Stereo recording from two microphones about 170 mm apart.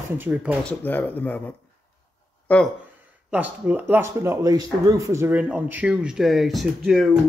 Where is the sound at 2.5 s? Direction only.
10° left (ahead or behind).